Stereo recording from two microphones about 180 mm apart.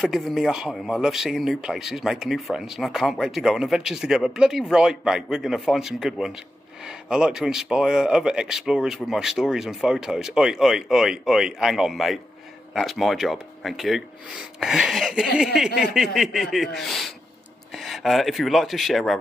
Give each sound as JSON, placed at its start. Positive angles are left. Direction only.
{"t": 0.0, "sound": "speech", "side_deg": 0}